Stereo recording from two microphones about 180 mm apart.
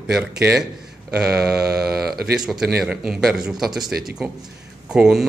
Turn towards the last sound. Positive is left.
turn(degrees=-5)  # may be behind; listen again after turning